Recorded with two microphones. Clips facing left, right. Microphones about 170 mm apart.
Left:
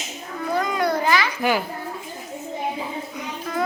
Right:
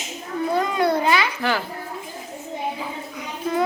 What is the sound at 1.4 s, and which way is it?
Speech, 15° left (ahead or behind).